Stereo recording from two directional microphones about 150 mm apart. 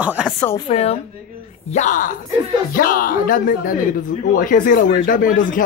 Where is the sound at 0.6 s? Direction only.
45° left (ahead or behind).